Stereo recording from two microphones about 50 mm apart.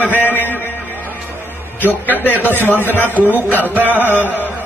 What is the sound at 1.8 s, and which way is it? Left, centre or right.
A man's voice, left.